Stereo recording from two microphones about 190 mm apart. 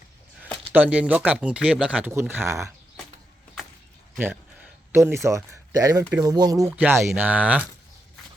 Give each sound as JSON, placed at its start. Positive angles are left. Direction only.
{"t": 0.7, "sound": "speech", "side_deg": -5}
{"t": 4.9, "sound": "speech", "side_deg": -10}